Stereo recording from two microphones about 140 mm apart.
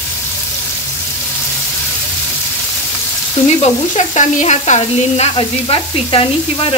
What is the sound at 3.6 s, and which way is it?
Frying, 55° left (ahead or behind).